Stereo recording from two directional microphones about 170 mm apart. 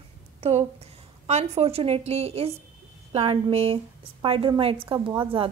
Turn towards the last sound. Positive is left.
turn(degrees=-30)  # may be behind; listen again after turning